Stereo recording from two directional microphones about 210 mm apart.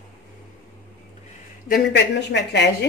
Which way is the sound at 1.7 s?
55° left (ahead or behind).